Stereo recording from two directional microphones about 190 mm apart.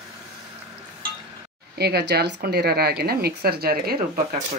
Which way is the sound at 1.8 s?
60° right (ahead or behind).